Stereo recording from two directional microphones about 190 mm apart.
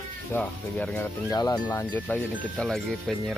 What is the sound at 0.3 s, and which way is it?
Speech, 10° left (ahead or behind).